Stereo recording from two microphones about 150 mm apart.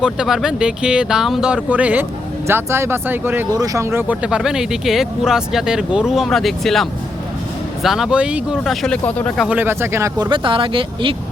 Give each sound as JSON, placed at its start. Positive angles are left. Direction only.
{"t": 0.0, "sound": "speech", "side_deg": -5}
{"t": 9.4, "sound": "speech", "side_deg": -10}